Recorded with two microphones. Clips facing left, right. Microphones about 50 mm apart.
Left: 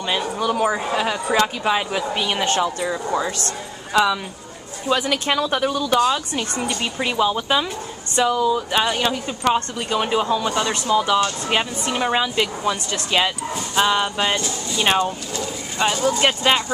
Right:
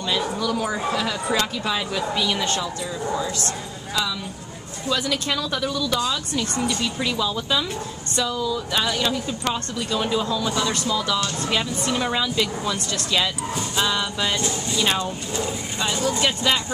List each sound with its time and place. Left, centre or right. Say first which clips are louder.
0.4 s speech: left 4 dB; left
2.6 s a woman's voice: left 5 dB; left
4.8 s speech: left 4 dB; left